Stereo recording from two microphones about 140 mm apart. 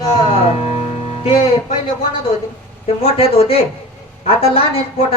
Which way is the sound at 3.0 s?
45° left (ahead or behind).